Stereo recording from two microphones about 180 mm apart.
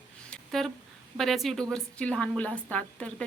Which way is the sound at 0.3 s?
Centre (ahead or behind).